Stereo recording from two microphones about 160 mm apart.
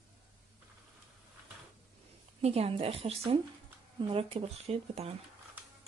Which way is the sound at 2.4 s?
40° right (ahead or behind).